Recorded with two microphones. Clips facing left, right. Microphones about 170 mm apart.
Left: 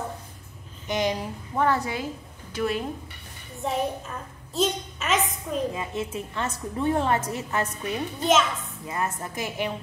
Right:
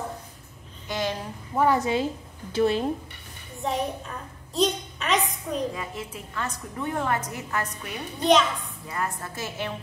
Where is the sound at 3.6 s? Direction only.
Centre (ahead or behind).